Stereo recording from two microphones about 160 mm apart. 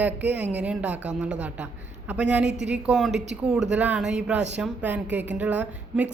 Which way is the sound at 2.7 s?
5° right (ahead or behind).